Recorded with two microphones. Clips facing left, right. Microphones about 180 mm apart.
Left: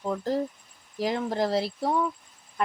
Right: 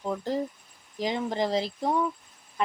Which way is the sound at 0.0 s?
Centre (ahead or behind).